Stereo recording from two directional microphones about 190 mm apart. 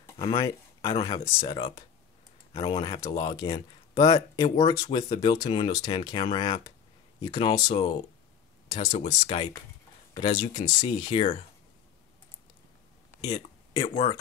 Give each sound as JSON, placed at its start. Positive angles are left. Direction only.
{"t": 0.2, "sound": "speech", "side_deg": 25}
{"t": 13.3, "sound": "speech", "side_deg": 30}